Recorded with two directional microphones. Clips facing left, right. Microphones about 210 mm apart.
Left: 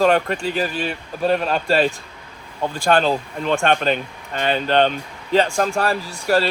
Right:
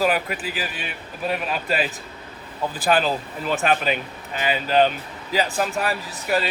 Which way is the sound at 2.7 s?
5° right (ahead or behind).